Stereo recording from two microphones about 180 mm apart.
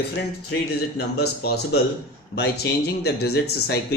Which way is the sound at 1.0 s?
65° left (ahead or behind).